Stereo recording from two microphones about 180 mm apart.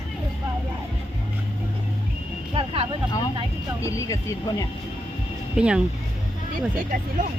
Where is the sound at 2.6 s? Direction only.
30° right (ahead or behind).